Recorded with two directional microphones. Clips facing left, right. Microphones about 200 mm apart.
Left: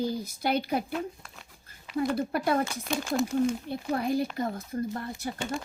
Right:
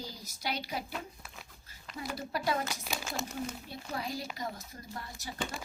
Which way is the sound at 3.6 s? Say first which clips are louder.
Left 10 dB; 55° left (ahead or behind).